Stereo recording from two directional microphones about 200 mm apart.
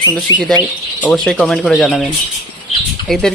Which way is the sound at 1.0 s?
Centre (ahead or behind).